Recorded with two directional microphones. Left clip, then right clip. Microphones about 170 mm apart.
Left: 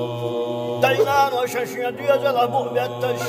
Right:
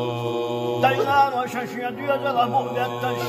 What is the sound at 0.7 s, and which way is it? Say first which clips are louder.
A capella: left 1 dB; 65° left (ahead or behind).